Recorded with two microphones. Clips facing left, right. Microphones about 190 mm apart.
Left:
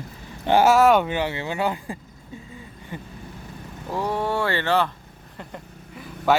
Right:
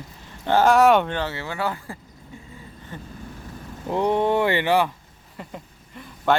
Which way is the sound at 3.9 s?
20° right (ahead or behind).